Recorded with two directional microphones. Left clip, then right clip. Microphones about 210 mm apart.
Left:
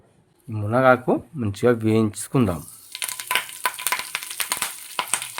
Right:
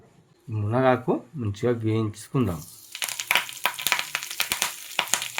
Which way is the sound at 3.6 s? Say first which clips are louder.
Even; centre (ahead or behind).